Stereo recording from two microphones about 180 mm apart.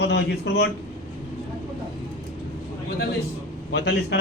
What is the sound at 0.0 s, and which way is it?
Speech, 70° left (ahead or behind).